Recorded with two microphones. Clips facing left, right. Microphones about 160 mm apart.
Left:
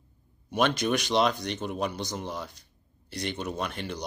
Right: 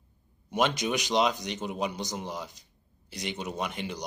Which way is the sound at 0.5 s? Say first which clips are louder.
Left 2 dB; 15° right (ahead or behind).